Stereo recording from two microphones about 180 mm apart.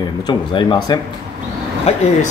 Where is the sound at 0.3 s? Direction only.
25° left (ahead or behind).